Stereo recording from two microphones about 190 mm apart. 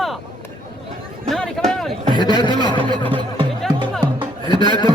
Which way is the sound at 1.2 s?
Centre (ahead or behind).